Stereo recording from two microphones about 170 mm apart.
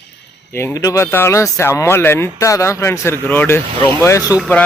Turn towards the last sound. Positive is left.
turn(degrees=-10)  # may be behind; listen again after turning